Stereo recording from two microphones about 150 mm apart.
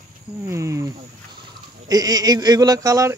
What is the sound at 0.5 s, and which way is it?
Speech, 20° right (ahead or behind).